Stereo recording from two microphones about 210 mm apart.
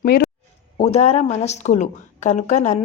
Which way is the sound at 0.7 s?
30° left (ahead or behind).